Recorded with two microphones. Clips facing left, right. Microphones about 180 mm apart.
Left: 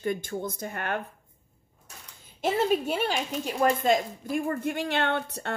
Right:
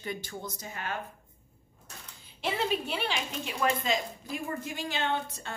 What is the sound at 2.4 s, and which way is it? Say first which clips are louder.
Speech: left 6 dB; 45° left (ahead or behind).